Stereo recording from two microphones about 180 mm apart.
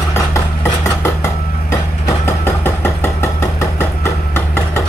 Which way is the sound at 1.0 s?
15° left (ahead or behind).